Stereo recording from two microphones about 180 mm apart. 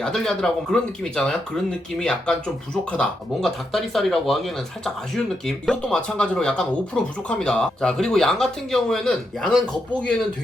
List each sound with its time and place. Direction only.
0.0 s speech: centre (ahead or behind)